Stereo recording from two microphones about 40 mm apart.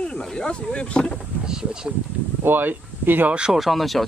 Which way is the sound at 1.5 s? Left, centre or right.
Centre.